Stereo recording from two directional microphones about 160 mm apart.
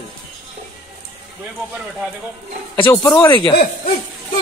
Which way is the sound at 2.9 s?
20° left (ahead or behind).